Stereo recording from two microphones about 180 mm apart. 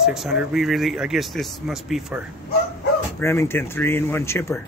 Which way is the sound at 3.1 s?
15° left (ahead or behind).